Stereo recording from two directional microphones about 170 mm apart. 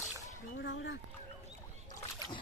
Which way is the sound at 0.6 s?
90° left.